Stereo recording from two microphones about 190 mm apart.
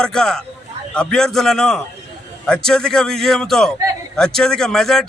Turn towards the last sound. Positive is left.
turn(degrees=0)  # may be behind; listen again after turning